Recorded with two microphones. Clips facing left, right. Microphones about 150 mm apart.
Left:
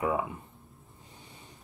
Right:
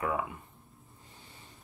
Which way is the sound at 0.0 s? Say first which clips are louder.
Left 3 dB; 20° left (ahead or behind).